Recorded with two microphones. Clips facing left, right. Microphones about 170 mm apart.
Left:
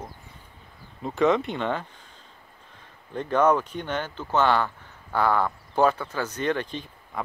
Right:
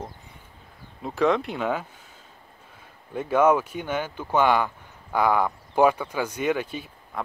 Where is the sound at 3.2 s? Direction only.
10° right (ahead or behind).